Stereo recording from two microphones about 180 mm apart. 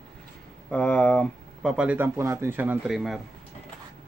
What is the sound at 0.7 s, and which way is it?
Speech, 5° left (ahead or behind).